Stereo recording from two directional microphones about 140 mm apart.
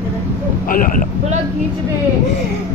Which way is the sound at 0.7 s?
80° left.